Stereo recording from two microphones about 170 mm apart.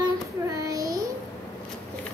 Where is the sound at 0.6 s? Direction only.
20° right (ahead or behind).